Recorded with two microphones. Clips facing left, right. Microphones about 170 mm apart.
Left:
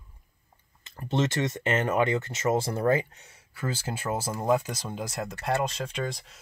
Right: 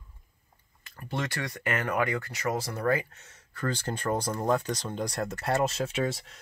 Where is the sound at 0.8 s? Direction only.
25° left (ahead or behind).